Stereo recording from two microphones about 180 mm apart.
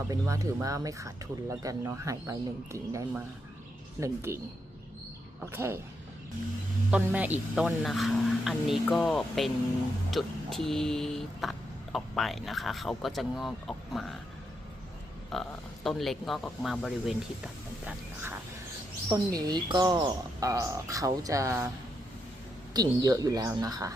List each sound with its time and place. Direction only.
0.1 s speech: 20° right (ahead or behind)
5.4 s speech: 10° right (ahead or behind)
6.9 s speech: 10° right (ahead or behind)
15.3 s speech: centre (ahead or behind)
19.0 s speech: 20° right (ahead or behind)
22.7 s speech: 20° right (ahead or behind)